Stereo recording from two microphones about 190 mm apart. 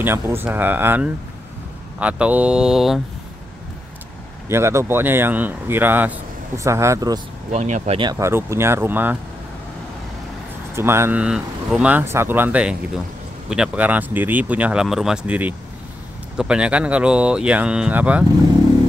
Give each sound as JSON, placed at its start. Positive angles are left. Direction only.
{"t": 0.0, "sound": "speech", "side_deg": -10}
{"t": 4.5, "sound": "speech", "side_deg": -15}
{"t": 7.5, "sound": "speech", "side_deg": -35}
{"t": 8.0, "sound": "speech", "side_deg": -15}
{"t": 10.7, "sound": "speech", "side_deg": -15}